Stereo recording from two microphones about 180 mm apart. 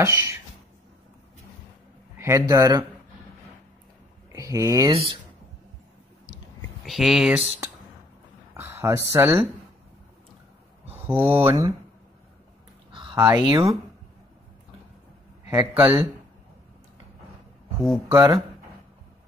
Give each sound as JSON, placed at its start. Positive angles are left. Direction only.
{"t": 0.0, "sound": "speech", "side_deg": -15}
{"t": 2.1, "sound": "a man's voice", "side_deg": -15}
{"t": 4.3, "sound": "speech", "side_deg": -20}
{"t": 4.9, "sound": "speech", "side_deg": -30}
{"t": 6.9, "sound": "speech", "side_deg": 0}
{"t": 8.5, "sound": "speech", "side_deg": -15}
{"t": 11.2, "sound": "speech", "side_deg": -15}
{"t": 13.1, "sound": "speech", "side_deg": -15}
{"t": 15.5, "sound": "speech", "side_deg": -10}
{"t": 18.0, "sound": "speech", "side_deg": -15}